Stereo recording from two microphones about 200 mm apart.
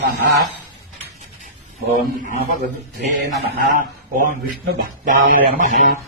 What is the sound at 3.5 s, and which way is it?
Speech, 40° right (ahead or behind).